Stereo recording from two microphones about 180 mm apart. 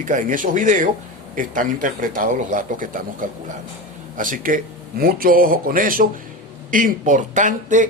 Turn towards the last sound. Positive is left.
turn(degrees=-45)  # may be behind; listen again after turning